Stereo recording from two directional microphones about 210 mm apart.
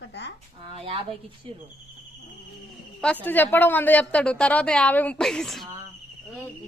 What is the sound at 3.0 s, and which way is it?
A woman's voice, 5° left (ahead or behind).